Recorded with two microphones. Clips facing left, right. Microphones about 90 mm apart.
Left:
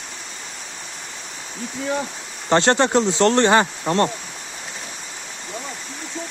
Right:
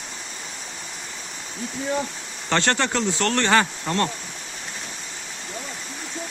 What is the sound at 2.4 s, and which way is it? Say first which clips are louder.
Speech: left 6 dB; 20° left (ahead or behind).